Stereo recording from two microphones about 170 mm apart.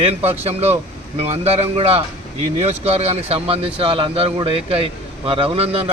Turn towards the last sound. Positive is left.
turn(degrees=-35)  # may be behind; listen again after turning